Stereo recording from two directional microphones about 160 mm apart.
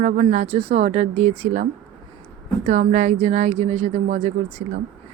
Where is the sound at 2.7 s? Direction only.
50° right (ahead or behind).